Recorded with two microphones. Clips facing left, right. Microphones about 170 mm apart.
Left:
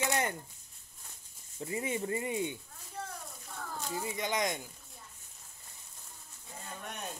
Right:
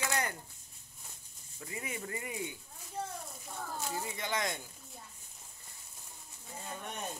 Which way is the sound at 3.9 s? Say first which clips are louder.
Left 4 dB; 20° left (ahead or behind).